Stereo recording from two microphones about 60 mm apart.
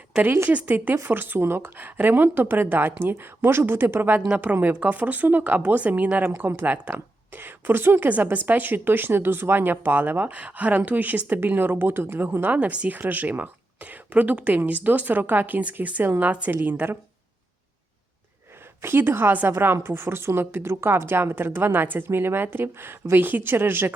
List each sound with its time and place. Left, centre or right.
1.0 s a woman's voice: right
18.8 s a woman's voice: right